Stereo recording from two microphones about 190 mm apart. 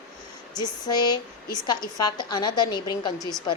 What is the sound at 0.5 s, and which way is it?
A woman's voice, 20° left (ahead or behind).